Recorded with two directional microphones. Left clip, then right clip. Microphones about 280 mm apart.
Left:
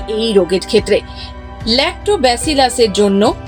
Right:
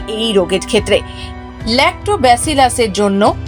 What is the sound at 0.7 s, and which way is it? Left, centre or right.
Speech, centre.